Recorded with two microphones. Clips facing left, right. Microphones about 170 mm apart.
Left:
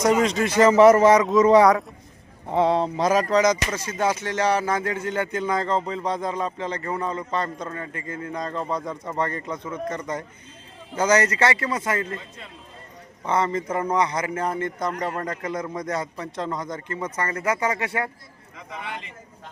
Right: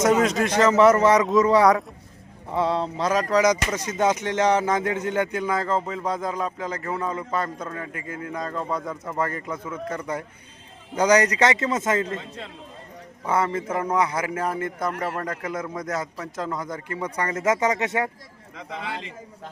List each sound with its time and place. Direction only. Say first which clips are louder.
0.0 s speech: even; centre (ahead or behind)
0.6 s speech: left 3 dB; 15° left (ahead or behind)
1.1 s speech: left 1 dB; centre (ahead or behind)
2.5 s speech: left 3 dB; 20° left (ahead or behind)
3.2 s speech: even; centre (ahead or behind)
3.8 s speech: right 2 dB; 20° right (ahead or behind)
13.2 s speech: even; 5° right (ahead or behind)
18.5 s a man's voice: right 2 dB; 90° right